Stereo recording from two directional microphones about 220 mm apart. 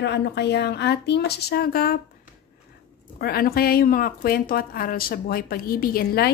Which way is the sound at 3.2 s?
45° left (ahead or behind).